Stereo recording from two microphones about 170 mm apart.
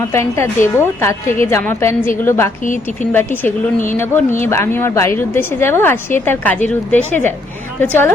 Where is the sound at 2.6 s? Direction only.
50° left (ahead or behind).